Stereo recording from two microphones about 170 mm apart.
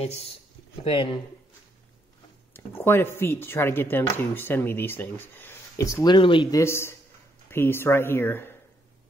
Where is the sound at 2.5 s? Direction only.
15° left (ahead or behind).